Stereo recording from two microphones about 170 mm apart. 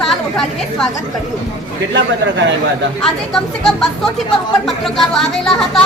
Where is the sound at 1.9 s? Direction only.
90° right.